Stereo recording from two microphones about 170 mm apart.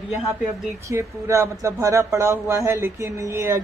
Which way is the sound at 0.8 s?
15° right (ahead or behind).